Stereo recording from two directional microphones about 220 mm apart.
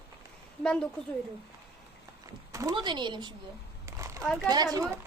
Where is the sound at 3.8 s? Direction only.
15° right (ahead or behind).